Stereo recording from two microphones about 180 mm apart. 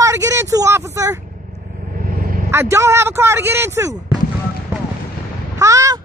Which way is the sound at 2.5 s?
15° right (ahead or behind).